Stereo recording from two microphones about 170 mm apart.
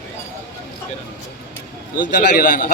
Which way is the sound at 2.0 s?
55° left (ahead or behind).